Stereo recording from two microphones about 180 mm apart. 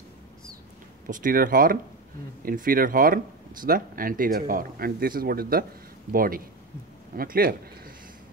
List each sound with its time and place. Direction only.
1.0 s speech: 50° right (ahead or behind)